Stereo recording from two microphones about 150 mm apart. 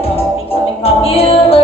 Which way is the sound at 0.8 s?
40° left (ahead or behind).